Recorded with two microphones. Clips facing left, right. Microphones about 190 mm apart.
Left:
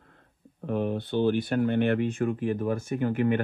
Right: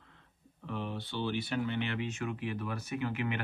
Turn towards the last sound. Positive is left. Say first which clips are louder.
# left 9 dB
turn(degrees=50)  # may be behind; listen again after turning